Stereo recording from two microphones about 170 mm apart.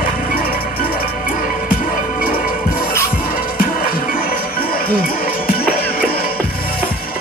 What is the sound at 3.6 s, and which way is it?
Music, 55° left (ahead or behind).